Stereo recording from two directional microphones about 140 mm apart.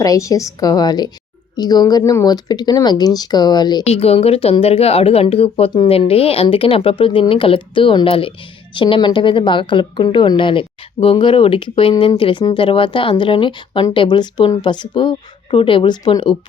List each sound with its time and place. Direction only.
0.0 s speech: 25° left (ahead or behind)
3.8 s a woman's voice: 50° left (ahead or behind); by 16.4 s 35° left (ahead or behind)